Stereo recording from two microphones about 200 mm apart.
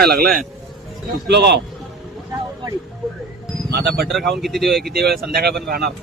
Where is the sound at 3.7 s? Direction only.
55° right (ahead or behind).